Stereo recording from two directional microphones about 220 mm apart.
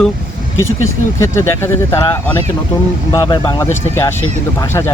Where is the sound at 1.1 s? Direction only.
10° left (ahead or behind).